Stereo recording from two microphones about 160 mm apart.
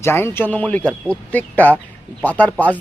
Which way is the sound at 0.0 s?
15° left (ahead or behind).